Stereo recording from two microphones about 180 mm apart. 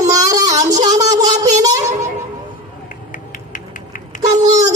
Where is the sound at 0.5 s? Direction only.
40° right (ahead or behind).